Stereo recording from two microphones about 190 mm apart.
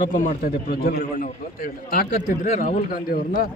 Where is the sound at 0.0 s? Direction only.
45° left (ahead or behind).